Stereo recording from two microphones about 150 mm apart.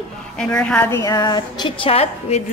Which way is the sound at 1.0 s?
25° left (ahead or behind).